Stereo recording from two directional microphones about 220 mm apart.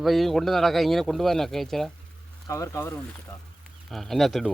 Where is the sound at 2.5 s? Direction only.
15° left (ahead or behind).